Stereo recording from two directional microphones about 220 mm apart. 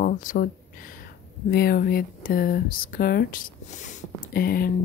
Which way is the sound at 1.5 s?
45° left (ahead or behind).